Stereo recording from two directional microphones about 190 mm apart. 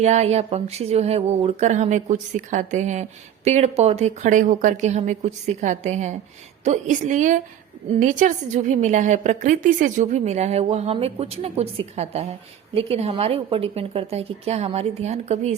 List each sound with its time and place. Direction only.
0.0 s speech: 35° right (ahead or behind)